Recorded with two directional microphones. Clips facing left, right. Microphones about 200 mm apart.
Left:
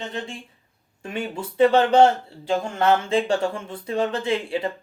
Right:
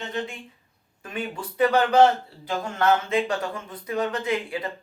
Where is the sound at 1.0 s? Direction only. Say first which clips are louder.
Left 3 dB; 25° left (ahead or behind).